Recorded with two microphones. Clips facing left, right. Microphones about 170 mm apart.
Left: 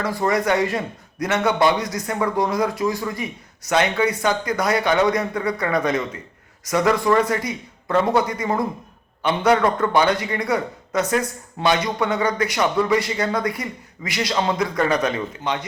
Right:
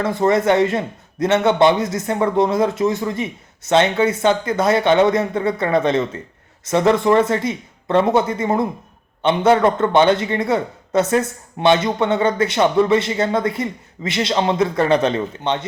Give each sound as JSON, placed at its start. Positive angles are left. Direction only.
{"t": 0.0, "sound": "a man's voice", "side_deg": -25}